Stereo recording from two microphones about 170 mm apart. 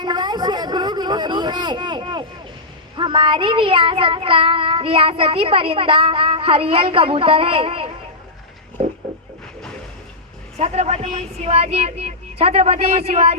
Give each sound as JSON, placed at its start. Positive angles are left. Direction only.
{"t": 0.0, "sound": "a sound", "side_deg": -25}
{"t": 3.0, "sound": "child singing", "side_deg": -30}
{"t": 10.6, "sound": "child singing", "side_deg": -40}